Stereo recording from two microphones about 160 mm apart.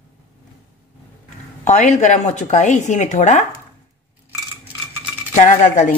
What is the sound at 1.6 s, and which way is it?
A woman's voice, 50° left (ahead or behind).